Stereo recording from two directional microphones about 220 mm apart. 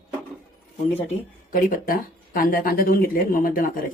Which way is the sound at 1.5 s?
40° left (ahead or behind).